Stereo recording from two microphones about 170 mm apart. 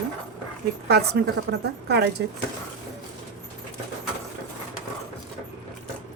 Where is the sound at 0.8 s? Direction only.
75° right (ahead or behind).